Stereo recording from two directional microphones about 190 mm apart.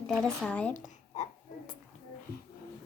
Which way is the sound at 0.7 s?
40° left (ahead or behind).